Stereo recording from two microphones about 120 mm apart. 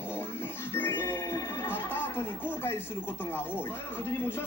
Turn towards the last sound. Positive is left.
turn(degrees=20)  # may be behind; listen again after turning